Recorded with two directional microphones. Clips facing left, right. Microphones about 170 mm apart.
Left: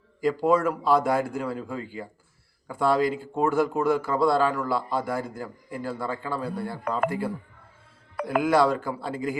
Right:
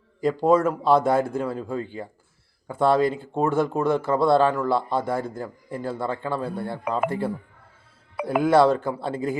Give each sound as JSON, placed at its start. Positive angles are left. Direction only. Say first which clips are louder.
{"t": 0.2, "sound": "speech", "louder": "right 3 dB", "side_deg": -25}
{"t": 8.1, "sound": "music", "louder": "right 2 dB", "side_deg": -5}
{"t": 8.4, "sound": "speech", "louder": "right 4 dB", "side_deg": -25}